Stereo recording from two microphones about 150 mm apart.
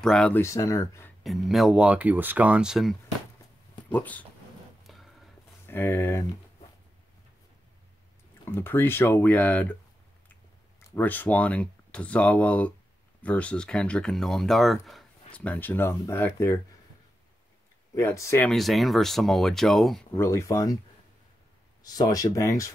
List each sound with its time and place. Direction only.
0.0 s speech: 5° left (ahead or behind)
0.4 s speech: 20° left (ahead or behind)
1.2 s speech: centre (ahead or behind)
3.9 s speech: 10° left (ahead or behind)
4.8 s a sound: centre (ahead or behind)
5.7 s speech: 15° left (ahead or behind)
8.5 s speech: 15° left (ahead or behind)
11.0 s speech: 10° left (ahead or behind)
17.9 s speech: 20° left (ahead or behind)
18.5 s speech: centre (ahead or behind)
20.2 s speech: 20° left (ahead or behind)
21.8 s speech: 25° left (ahead or behind)